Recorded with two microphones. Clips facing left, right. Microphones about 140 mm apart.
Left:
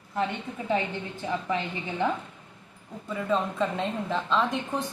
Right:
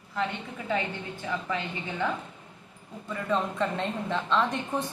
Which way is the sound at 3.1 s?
5° left (ahead or behind).